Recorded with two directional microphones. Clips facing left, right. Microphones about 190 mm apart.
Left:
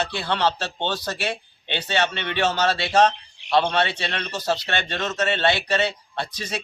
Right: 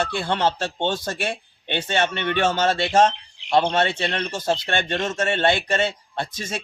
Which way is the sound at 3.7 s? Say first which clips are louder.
Right 2 dB; 45° right (ahead or behind).